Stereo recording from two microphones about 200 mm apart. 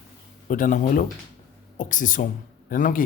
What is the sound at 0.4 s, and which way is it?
A man's voice, 40° left (ahead or behind).